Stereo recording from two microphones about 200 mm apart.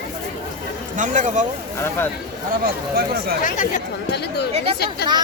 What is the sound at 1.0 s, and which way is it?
Speech, 40° right (ahead or behind).